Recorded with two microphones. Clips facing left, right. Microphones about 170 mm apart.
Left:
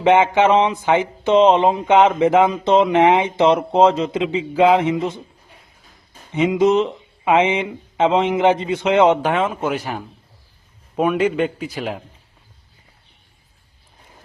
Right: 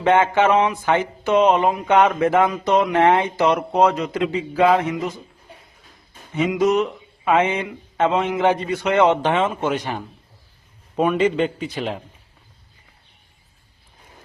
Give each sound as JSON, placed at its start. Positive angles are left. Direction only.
{"t": 0.0, "sound": "speech", "side_deg": 20}
{"t": 6.3, "sound": "speech", "side_deg": 20}
{"t": 9.2, "sound": "a man's voice", "side_deg": 5}